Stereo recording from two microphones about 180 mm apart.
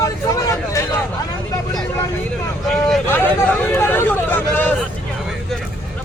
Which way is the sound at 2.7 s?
5° left (ahead or behind).